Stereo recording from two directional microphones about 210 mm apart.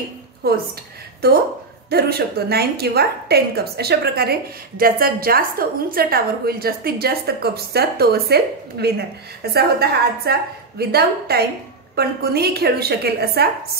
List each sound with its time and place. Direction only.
0.4 s a woman's voice: 45° right (ahead or behind)
1.9 s a woman's voice: 50° right (ahead or behind)